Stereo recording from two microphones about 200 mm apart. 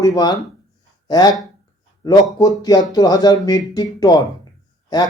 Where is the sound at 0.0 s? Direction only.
20° left (ahead or behind).